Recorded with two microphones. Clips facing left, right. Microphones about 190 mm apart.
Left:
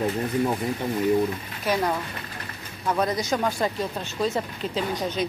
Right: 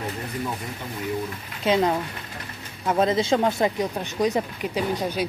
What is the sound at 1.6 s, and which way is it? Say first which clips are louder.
Speech: right 4 dB; 25° right (ahead or behind).